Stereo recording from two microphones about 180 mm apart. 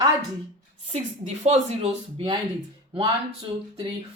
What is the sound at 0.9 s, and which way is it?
Speech, 40° right (ahead or behind).